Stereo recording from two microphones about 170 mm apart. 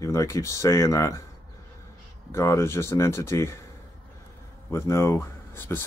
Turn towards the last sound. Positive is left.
turn(degrees=15)  # may be behind; listen again after turning